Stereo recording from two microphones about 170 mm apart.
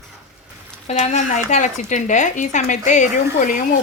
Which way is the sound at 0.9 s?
40° left (ahead or behind).